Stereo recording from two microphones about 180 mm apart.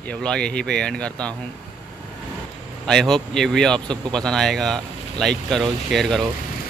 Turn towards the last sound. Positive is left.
turn(degrees=0)  # may be behind; listen again after turning